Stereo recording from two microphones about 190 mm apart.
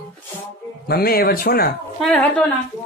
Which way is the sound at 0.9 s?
50° left (ahead or behind).